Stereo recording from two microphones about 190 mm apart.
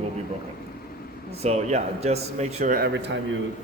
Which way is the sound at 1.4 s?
35° right (ahead or behind).